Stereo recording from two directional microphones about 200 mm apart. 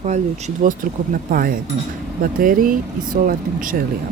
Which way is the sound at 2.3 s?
45° right (ahead or behind).